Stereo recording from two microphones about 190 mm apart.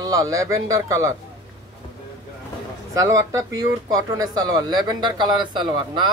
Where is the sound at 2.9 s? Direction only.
15° right (ahead or behind).